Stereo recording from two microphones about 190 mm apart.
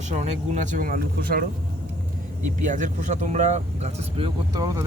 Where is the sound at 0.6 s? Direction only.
45° right (ahead or behind).